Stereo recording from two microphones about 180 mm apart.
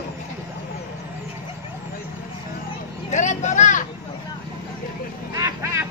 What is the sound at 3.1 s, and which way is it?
Vehicle, 40° left (ahead or behind).